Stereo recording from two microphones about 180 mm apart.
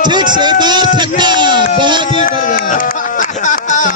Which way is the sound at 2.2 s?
50° left (ahead or behind).